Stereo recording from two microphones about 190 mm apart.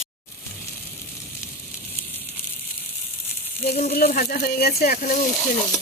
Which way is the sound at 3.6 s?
55° left (ahead or behind).